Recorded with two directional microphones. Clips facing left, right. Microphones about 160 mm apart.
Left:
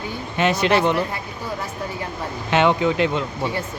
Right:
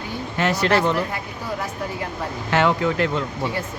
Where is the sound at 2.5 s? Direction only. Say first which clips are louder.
Left 2 dB; 20° left (ahead or behind).